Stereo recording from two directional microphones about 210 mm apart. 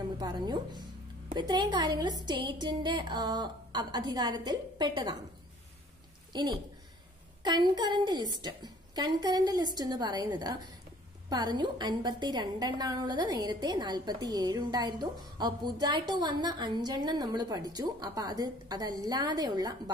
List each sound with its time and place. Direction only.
0.2 s a woman's voice: 20° right (ahead or behind)
6.3 s a woman's voice: 20° right (ahead or behind)